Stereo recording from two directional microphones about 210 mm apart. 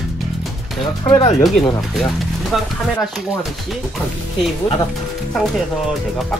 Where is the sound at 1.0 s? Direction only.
20° left (ahead or behind).